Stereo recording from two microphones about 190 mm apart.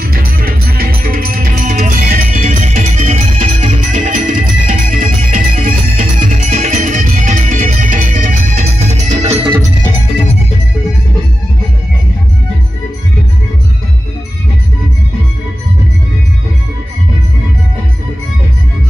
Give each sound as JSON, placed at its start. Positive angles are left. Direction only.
{"t": 0.0, "sound": "music", "side_deg": -50}